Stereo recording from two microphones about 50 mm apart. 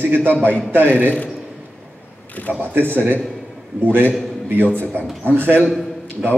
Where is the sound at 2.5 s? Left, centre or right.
Right.